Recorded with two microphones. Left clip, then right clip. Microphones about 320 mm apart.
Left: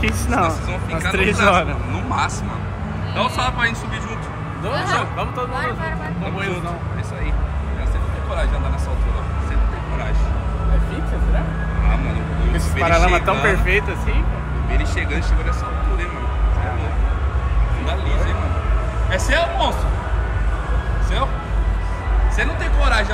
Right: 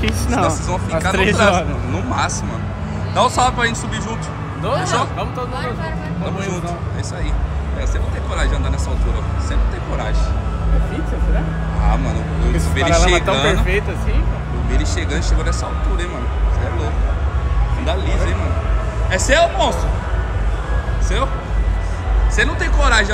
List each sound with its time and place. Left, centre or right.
0.0 s speech: centre
4.9 s speech: centre
12.5 s speech: centre
19.0 s speech: centre
22.4 s speech: centre